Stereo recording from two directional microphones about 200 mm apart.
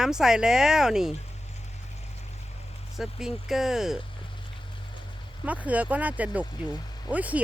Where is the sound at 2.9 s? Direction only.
Centre (ahead or behind).